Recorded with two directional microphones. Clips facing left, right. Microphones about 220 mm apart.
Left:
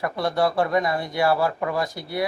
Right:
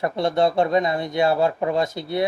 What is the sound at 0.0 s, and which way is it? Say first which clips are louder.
Speech: right 3 dB; 25° right (ahead or behind).